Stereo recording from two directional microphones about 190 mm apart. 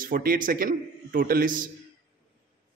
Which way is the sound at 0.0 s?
50° right (ahead or behind).